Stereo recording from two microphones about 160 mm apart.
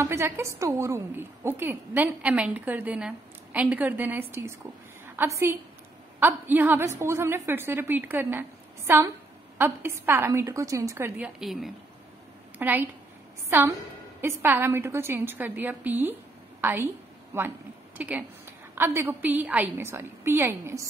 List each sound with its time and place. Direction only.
0.0 s a woman's voice: 15° right (ahead or behind)
16.6 s a sound: 15° right (ahead or behind)
17.9 s a woman's voice: 10° right (ahead or behind)